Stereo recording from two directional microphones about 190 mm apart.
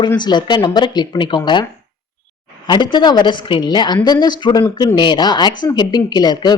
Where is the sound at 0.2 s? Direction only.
25° left (ahead or behind).